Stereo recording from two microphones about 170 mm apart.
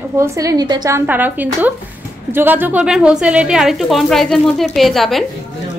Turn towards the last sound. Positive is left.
turn(degrees=0)  # may be behind; listen again after turning